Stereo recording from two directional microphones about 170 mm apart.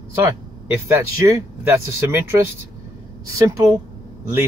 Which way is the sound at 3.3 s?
20° right (ahead or behind).